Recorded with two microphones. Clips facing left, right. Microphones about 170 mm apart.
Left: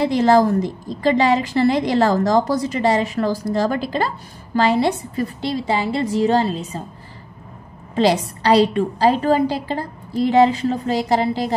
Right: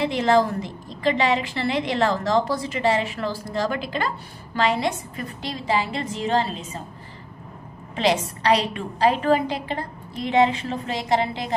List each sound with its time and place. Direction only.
0.0 s a woman's voice: 40° left (ahead or behind)
7.9 s a woman's voice: 35° left (ahead or behind)